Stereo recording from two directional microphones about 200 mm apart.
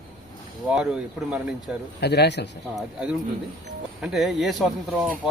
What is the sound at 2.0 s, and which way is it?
Speech, 55° left (ahead or behind).